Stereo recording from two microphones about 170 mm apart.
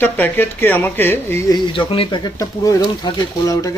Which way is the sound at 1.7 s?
30° left (ahead or behind).